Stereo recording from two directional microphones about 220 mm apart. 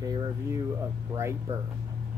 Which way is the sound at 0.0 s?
15° right (ahead or behind).